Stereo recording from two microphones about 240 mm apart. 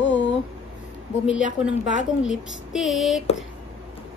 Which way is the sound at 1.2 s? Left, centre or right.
Left.